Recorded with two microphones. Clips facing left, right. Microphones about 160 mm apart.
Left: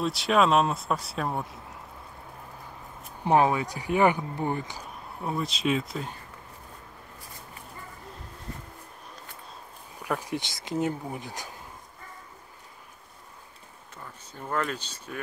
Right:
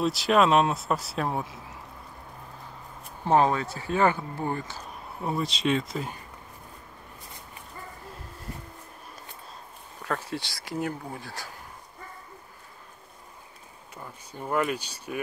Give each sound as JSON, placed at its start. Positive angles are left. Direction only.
{"t": 0.0, "sound": "speech", "side_deg": 0}
{"t": 3.3, "sound": "speech", "side_deg": 15}
{"t": 5.2, "sound": "speech", "side_deg": 0}
{"t": 10.0, "sound": "speech", "side_deg": 15}
{"t": 13.9, "sound": "speech", "side_deg": -10}